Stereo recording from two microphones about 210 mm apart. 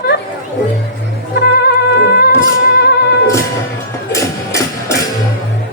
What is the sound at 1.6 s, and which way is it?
Music, 50° left (ahead or behind).